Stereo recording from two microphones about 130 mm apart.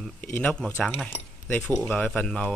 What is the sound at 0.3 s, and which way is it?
Speech, 10° left (ahead or behind).